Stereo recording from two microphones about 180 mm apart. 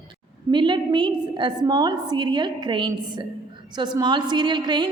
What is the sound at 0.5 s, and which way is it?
A woman's voice, 25° right (ahead or behind).